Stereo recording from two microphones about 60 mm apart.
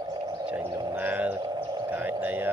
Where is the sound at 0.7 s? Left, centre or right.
Right.